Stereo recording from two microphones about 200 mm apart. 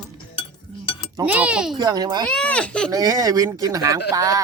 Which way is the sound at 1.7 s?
20° right (ahead or behind).